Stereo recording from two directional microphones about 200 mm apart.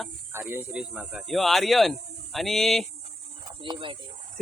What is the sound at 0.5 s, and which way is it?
A man's voice, 5° right (ahead or behind).